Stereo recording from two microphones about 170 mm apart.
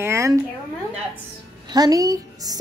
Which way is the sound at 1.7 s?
20° right (ahead or behind).